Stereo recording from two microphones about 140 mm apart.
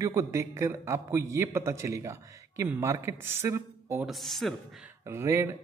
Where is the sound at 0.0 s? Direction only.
20° right (ahead or behind).